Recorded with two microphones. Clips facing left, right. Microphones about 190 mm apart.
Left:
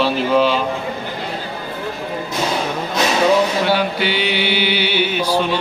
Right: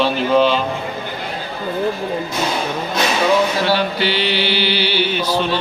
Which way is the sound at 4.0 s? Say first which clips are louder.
Even; 55° left (ahead or behind).